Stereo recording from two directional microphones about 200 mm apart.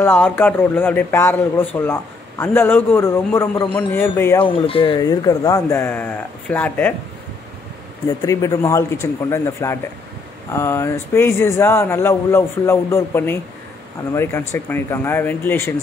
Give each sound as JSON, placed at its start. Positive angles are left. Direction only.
{"t": 0.0, "sound": "a man's voice", "side_deg": 10}
{"t": 4.6, "sound": "a man's voice", "side_deg": 25}
{"t": 8.3, "sound": "a man's voice", "side_deg": 15}